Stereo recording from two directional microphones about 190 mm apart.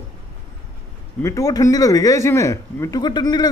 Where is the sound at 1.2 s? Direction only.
15° left (ahead or behind).